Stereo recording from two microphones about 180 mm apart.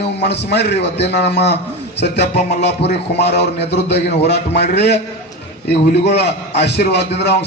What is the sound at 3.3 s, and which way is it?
A man's voice, 70° left (ahead or behind).